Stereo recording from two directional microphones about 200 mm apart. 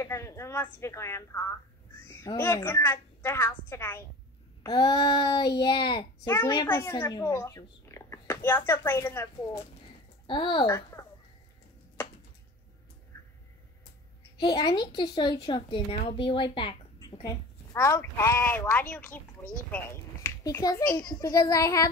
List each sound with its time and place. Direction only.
0.0 s a child's voice: 15° left (ahead or behind)
10.2 s a child's voice: 25° left (ahead or behind)
14.4 s a child's voice: 20° left (ahead or behind)